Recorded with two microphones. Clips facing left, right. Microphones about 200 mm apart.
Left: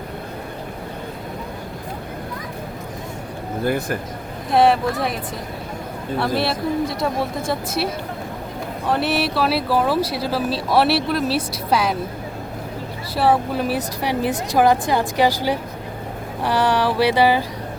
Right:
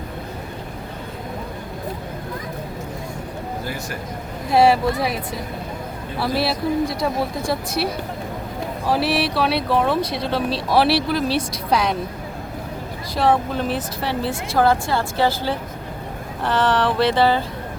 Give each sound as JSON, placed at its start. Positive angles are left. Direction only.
{"t": 3.6, "sound": "speech", "side_deg": 55}
{"t": 4.5, "sound": "speech", "side_deg": 0}
{"t": 13.1, "sound": "a woman's voice", "side_deg": 10}